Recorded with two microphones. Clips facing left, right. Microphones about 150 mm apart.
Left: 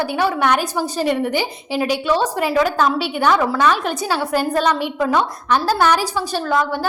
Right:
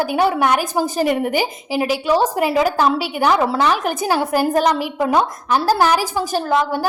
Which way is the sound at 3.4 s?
30° right (ahead or behind).